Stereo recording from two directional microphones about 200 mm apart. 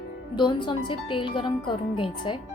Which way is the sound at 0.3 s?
25° left (ahead or behind).